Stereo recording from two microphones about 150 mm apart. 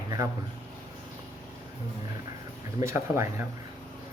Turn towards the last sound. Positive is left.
turn(degrees=-20)  # may be behind; listen again after turning